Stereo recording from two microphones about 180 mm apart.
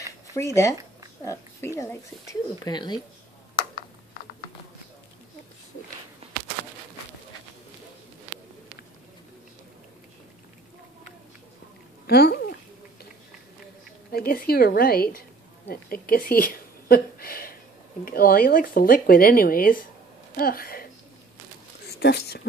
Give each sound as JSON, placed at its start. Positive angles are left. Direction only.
{"t": 0.6, "sound": "speech", "side_deg": 15}
{"t": 12.1, "sound": "a sound", "side_deg": 60}
{"t": 14.1, "sound": "a woman's voice", "side_deg": 55}
{"t": 22.0, "sound": "a woman's voice", "side_deg": 65}